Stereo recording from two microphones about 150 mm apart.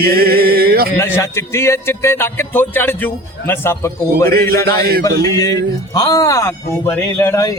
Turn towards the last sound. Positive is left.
turn(degrees=20)  # may be behind; listen again after turning